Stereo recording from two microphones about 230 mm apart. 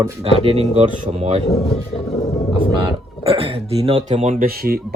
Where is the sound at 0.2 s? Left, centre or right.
Right.